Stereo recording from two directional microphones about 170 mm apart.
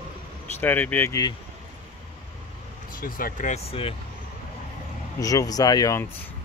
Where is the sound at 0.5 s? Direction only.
10° left (ahead or behind).